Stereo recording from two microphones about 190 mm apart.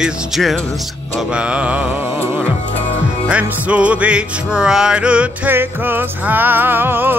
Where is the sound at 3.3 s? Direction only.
5° right (ahead or behind).